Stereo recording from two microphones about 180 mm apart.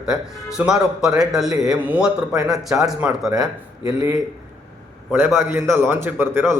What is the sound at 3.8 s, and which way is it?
A man's voice, 20° right (ahead or behind).